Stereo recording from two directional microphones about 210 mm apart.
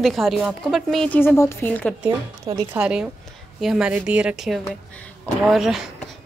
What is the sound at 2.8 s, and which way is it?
A woman's voice, 5° right (ahead or behind).